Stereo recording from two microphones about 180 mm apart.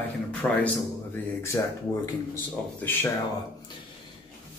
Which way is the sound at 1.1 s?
15° left (ahead or behind).